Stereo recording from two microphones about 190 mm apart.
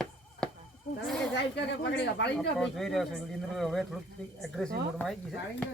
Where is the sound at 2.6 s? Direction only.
Centre (ahead or behind).